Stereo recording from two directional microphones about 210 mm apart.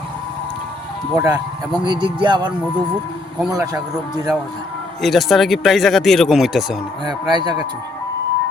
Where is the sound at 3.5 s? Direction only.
15° right (ahead or behind).